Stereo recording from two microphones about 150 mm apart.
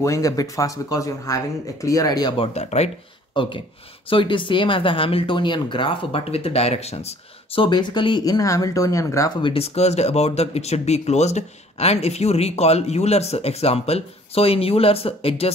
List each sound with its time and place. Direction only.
0.0 s speech: 20° left (ahead or behind); by 2.9 s 45° left (ahead or behind)
3.3 s speech: 35° left (ahead or behind)
9.4 s speech: 40° left (ahead or behind)